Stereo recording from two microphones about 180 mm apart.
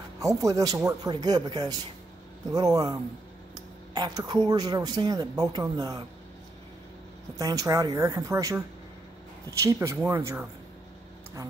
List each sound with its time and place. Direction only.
0.2 s speech: 20° right (ahead or behind)
7.3 s speech: 20° right (ahead or behind)